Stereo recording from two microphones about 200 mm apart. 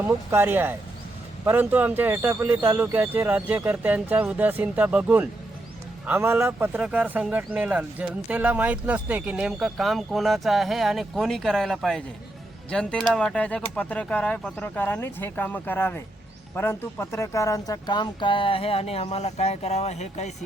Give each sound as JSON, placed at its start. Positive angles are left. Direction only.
{"t": 0.0, "sound": "speech", "side_deg": -10}